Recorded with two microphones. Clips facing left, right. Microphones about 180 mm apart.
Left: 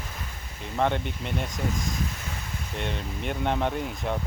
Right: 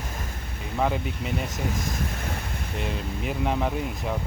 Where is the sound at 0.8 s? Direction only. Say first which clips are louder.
Even; 5° right (ahead or behind).